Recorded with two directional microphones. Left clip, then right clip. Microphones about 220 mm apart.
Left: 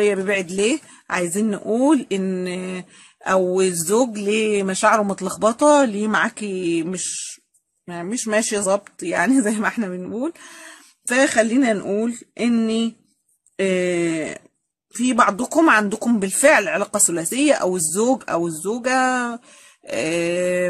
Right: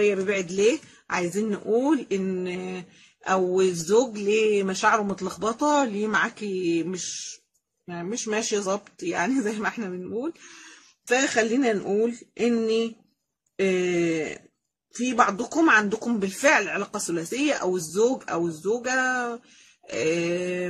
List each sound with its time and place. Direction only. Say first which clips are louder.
0.0 s speech: left 4 dB; 50° left (ahead or behind)